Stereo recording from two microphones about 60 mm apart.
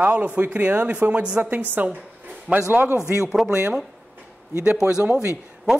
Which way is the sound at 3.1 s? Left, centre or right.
Right.